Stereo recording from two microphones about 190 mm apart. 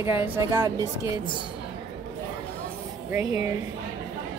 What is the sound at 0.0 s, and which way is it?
Speech, 15° right (ahead or behind).